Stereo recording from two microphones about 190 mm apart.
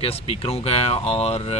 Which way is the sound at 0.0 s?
30° left (ahead or behind).